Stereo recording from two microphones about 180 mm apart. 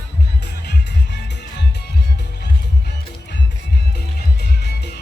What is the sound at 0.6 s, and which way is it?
Music, 70° left (ahead or behind).